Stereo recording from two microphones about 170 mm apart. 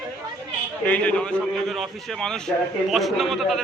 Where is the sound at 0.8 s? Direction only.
10° left (ahead or behind).